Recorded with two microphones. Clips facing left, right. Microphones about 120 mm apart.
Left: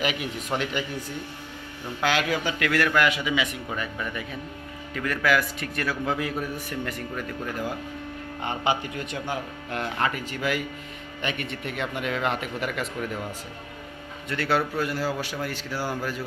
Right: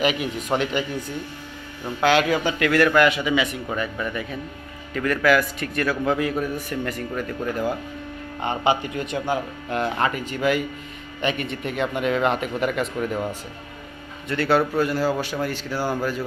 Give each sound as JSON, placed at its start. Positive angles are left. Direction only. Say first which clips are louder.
{"t": 0.0, "sound": "speech", "louder": "right 5 dB", "side_deg": -20}
{"t": 2.0, "sound": "a man's voice", "louder": "right 6 dB", "side_deg": -25}
{"t": 3.7, "sound": "a man's voice", "louder": "right 5 dB", "side_deg": -45}
{"t": 8.4, "sound": "speech", "louder": "right 5 dB", "side_deg": -25}
{"t": 14.3, "sound": "speech", "louder": "right 5 dB", "side_deg": -30}